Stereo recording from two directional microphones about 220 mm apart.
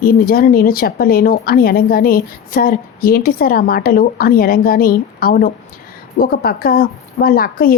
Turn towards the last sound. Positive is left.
turn(degrees=40)  # may be behind; listen again after turning